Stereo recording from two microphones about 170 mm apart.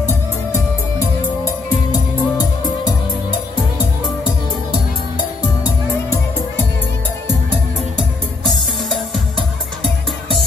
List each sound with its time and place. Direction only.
1.9 s music: 25° left (ahead or behind)